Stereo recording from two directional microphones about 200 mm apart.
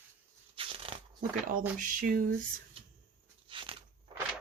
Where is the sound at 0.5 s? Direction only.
25° right (ahead or behind).